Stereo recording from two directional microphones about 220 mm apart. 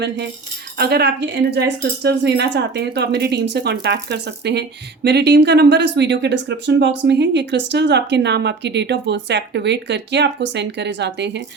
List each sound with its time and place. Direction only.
0.8 s speech: 45° right (ahead or behind)